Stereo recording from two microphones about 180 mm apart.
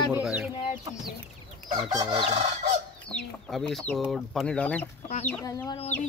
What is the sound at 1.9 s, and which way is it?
Chicken, 25° right (ahead or behind).